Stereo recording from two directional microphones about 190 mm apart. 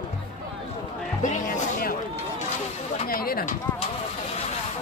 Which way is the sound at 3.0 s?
50° left (ahead or behind).